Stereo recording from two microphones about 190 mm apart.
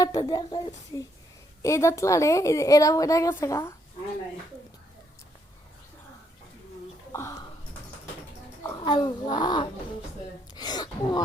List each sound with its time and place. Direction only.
0.0 s a child's voice: 20° left (ahead or behind)
7.1 s speech: 15° left (ahead or behind)
8.8 s a child's voice: 20° left (ahead or behind)
10.5 s gasp: 20° left (ahead or behind)